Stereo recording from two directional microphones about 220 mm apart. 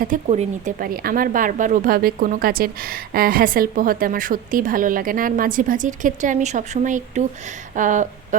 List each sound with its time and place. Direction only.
0.0 s speech: 35° right (ahead or behind)